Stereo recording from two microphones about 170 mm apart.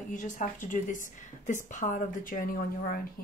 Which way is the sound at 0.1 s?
50° left (ahead or behind).